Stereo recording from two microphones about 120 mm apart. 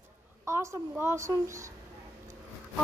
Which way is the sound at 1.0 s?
25° right (ahead or behind).